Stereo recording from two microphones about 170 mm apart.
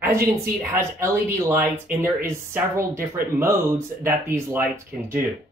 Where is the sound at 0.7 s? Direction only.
15° right (ahead or behind).